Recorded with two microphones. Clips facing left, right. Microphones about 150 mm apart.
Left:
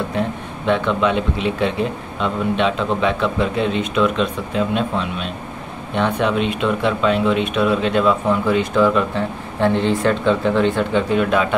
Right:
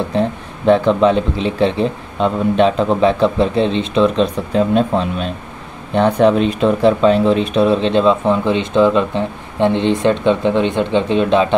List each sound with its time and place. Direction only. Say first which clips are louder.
0.1 s speech: right 4 dB; 35° right (ahead or behind)